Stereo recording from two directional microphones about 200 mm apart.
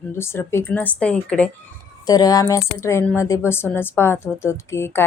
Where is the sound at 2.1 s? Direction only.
20° left (ahead or behind).